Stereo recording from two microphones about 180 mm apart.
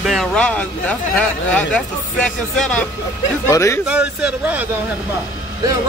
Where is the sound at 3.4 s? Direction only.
15° left (ahead or behind).